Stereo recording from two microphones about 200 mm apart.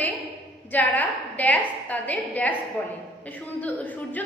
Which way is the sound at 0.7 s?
10° left (ahead or behind).